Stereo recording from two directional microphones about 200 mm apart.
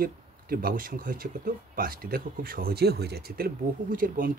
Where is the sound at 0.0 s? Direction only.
50° right (ahead or behind).